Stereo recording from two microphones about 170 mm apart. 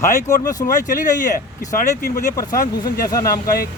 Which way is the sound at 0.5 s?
50° left (ahead or behind).